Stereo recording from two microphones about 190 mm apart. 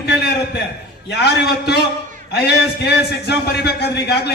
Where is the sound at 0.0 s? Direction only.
60° left (ahead or behind).